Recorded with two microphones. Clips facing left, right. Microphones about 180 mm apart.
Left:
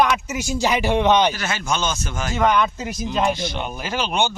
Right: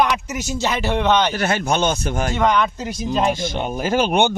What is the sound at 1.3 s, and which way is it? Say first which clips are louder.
Speech: right 5 dB; 55° right (ahead or behind).